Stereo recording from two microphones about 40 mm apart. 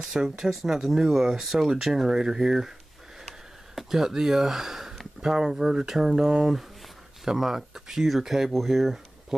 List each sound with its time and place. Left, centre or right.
0.0 s speech: centre
3.7 s speech: centre